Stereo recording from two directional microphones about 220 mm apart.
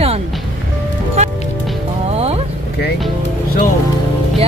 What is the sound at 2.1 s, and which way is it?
Vehicle, 30° right (ahead or behind).